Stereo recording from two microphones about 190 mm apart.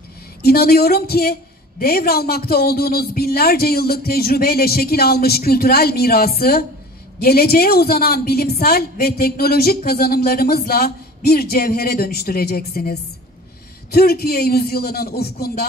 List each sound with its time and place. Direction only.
0.4 s a woman's voice: 55° left (ahead or behind)